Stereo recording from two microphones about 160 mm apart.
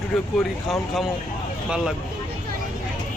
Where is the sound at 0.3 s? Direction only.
Centre (ahead or behind).